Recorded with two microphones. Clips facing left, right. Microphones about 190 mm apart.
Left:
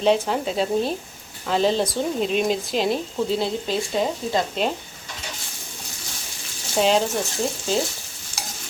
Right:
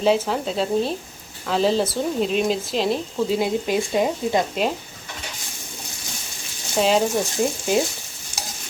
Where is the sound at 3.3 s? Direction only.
10° right (ahead or behind).